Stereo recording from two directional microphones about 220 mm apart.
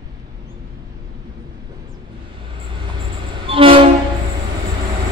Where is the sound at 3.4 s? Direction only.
25° right (ahead or behind).